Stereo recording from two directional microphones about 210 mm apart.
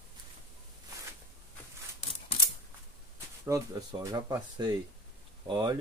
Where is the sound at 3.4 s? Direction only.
15° right (ahead or behind).